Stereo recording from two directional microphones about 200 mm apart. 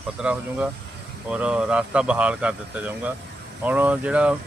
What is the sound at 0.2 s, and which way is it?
Speech, 5° right (ahead or behind).